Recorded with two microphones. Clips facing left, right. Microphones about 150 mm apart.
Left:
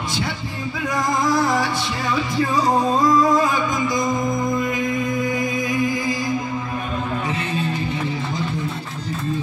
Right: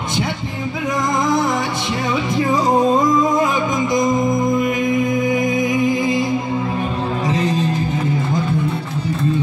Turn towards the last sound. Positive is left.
turn(degrees=-35)  # may be behind; listen again after turning